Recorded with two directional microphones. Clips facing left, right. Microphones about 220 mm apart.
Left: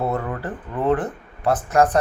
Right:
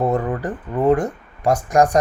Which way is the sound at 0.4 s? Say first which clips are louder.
Right 4 dB; 15° right (ahead or behind).